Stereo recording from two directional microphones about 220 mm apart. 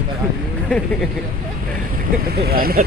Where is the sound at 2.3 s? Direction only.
45° right (ahead or behind).